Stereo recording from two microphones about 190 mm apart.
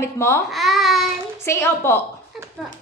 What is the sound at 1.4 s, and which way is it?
Speech, 15° left (ahead or behind).